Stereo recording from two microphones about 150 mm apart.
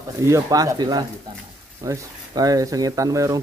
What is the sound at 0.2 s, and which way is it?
Speech, 20° right (ahead or behind).